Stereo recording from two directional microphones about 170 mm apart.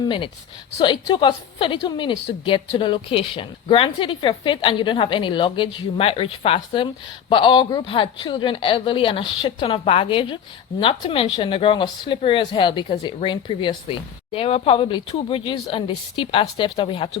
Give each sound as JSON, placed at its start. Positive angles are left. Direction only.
{"t": 0.0, "sound": "a woman's voice", "side_deg": 30}